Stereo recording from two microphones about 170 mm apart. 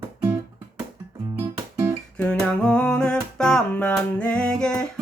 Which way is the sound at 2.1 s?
5° left (ahead or behind).